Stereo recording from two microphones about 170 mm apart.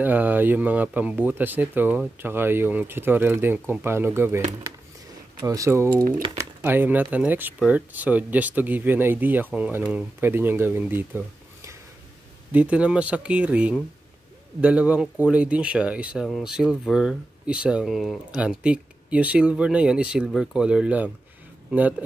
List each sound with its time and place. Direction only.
0.0 s speech: 10° right (ahead or behind)
5.4 s speech: 20° right (ahead or behind)